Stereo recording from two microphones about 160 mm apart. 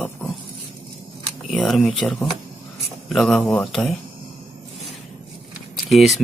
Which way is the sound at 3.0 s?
Centre (ahead or behind).